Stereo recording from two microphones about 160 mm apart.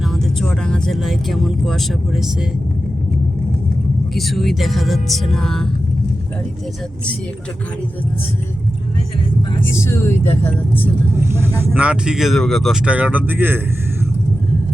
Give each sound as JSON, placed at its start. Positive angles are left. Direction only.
{"t": 0.1, "sound": "speech", "side_deg": 5}
{"t": 4.1, "sound": "speech", "side_deg": 0}
{"t": 9.7, "sound": "speech", "side_deg": 15}
{"t": 11.2, "sound": "speech", "side_deg": -15}